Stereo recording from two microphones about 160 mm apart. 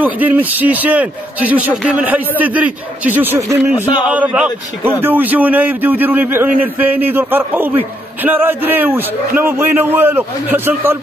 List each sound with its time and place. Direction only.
0.0 s a man's voice: 10° right (ahead or behind)